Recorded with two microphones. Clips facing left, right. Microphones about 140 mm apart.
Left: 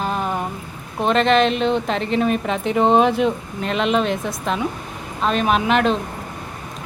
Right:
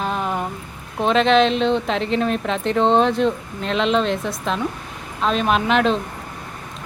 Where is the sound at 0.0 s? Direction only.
Centre (ahead or behind).